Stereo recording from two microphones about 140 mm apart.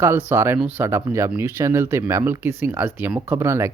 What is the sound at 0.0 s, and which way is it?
Speech, 20° right (ahead or behind).